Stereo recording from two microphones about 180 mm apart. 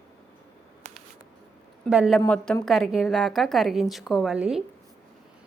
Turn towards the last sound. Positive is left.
turn(degrees=-5)  # may be behind; listen again after turning